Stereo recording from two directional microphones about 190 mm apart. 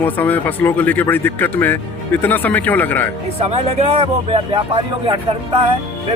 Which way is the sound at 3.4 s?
35° right (ahead or behind).